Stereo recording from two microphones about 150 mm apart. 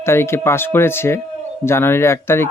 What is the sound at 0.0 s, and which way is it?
Speech, 15° left (ahead or behind).